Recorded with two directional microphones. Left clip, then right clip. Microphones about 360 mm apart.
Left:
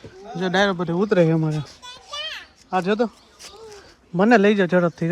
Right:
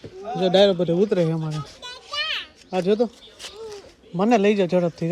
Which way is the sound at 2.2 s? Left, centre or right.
Centre.